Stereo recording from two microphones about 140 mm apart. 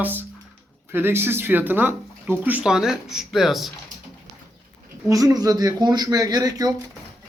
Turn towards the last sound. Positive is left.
turn(degrees=-25)  # may be behind; listen again after turning